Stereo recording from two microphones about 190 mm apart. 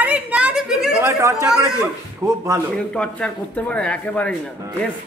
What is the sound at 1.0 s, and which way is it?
A woman's voice, 15° right (ahead or behind).